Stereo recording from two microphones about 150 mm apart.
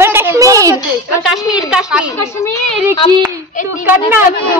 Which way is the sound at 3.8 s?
10° right (ahead or behind).